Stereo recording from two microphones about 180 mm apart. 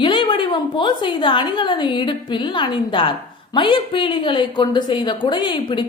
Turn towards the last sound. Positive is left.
turn(degrees=25)  # may be behind; listen again after turning